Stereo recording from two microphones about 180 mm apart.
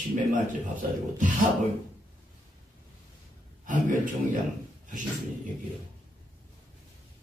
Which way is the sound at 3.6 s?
45° right (ahead or behind).